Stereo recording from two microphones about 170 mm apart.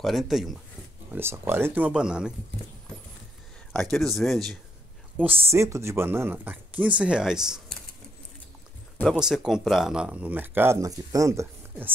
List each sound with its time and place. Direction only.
0.0 s speech: centre (ahead or behind)
1.1 s speech: 15° right (ahead or behind)
3.7 s speech: centre (ahead or behind)
5.2 s speech: 35° right (ahead or behind)
5.5 s speech: 15° right (ahead or behind)
8.9 s a sound: 10° left (ahead or behind)
9.2 s speech: 5° right (ahead or behind)